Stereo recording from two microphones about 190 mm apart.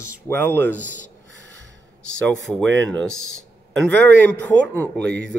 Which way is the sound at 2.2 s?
5° left (ahead or behind).